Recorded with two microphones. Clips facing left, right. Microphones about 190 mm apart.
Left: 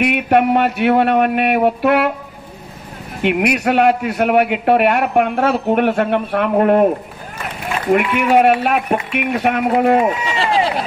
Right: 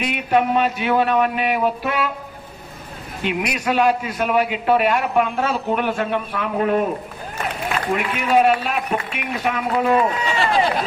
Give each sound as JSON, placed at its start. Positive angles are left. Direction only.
{"t": 0.0, "sound": "a man's voice", "side_deg": 65}
{"t": 3.2, "sound": "a man's voice", "side_deg": 65}
{"t": 7.9, "sound": "a man's voice", "side_deg": 60}
{"t": 10.2, "sound": "speech", "side_deg": 25}